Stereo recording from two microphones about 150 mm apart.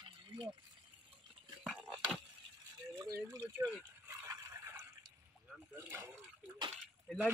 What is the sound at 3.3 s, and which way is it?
Speech, 25° right (ahead or behind).